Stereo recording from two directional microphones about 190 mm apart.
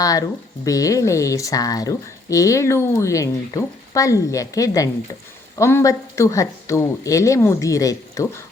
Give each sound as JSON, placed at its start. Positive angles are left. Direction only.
{"t": 0.0, "sound": "speech", "side_deg": 20}